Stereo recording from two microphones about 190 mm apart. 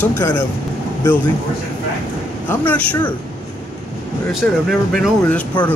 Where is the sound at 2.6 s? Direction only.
10° left (ahead or behind).